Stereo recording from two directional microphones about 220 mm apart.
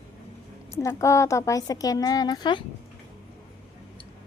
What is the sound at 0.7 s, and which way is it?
A woman's voice, 15° left (ahead or behind).